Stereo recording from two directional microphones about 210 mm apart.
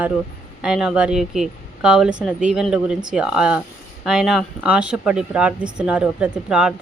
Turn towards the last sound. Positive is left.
turn(degrees=-5)  # may be behind; listen again after turning